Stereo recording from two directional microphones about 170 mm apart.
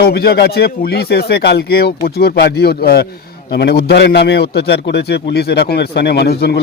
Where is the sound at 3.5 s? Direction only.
80° left.